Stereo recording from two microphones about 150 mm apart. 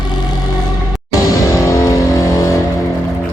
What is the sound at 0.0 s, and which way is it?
Music, 30° left (ahead or behind).